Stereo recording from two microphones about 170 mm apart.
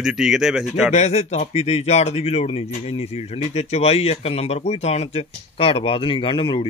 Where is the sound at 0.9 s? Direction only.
40° left (ahead or behind).